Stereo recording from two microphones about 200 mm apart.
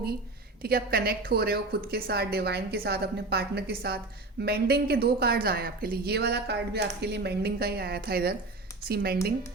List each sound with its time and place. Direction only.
0.6 s a woman's voice: 50° right (ahead or behind)